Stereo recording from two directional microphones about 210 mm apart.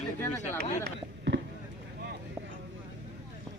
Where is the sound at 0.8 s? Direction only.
55° right (ahead or behind).